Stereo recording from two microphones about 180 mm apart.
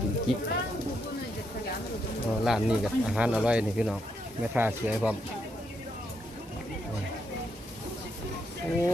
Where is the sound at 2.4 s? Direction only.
Centre (ahead or behind).